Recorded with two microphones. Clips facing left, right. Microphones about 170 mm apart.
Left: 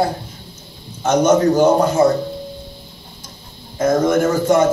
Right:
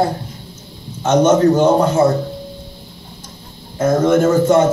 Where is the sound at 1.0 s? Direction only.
10° left (ahead or behind).